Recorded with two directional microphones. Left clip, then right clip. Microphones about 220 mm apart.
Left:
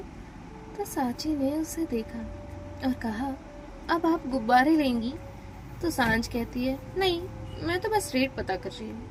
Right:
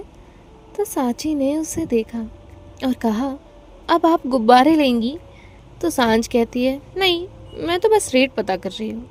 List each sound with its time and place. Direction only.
0.8 s a woman's voice: 45° right (ahead or behind)